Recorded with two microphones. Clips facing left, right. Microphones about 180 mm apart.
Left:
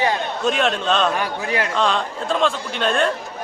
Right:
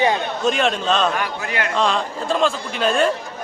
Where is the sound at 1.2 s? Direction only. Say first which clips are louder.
Left 2 dB; 30° left (ahead or behind).